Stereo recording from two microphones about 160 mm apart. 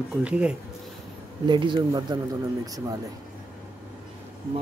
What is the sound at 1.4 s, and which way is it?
Speech, 30° right (ahead or behind).